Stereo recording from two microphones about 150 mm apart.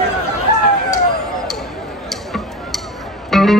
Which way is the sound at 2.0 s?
Centre (ahead or behind).